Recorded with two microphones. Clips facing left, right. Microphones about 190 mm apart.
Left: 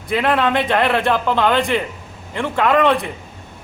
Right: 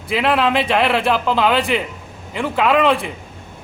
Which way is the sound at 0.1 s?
5° right (ahead or behind).